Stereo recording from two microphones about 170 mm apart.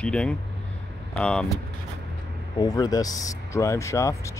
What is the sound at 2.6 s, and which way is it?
Speech, 25° left (ahead or behind).